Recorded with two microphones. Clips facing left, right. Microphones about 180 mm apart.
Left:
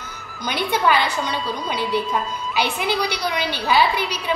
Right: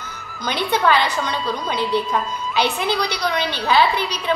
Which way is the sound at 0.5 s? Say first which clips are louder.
Right 1 dB; 10° left (ahead or behind).